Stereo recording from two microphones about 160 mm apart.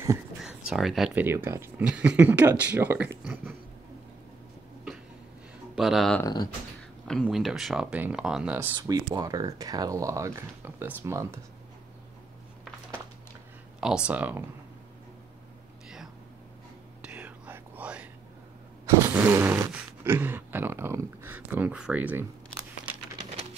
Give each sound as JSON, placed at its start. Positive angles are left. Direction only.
{"t": 0.4, "sound": "speech", "side_deg": -5}
{"t": 1.2, "sound": "speech", "side_deg": -15}
{"t": 5.8, "sound": "speech", "side_deg": 0}
{"t": 8.7, "sound": "speech", "side_deg": -25}
{"t": 13.7, "sound": "speech", "side_deg": -5}
{"t": 17.0, "sound": "whispering", "side_deg": -10}
{"t": 19.0, "sound": "speech", "side_deg": -15}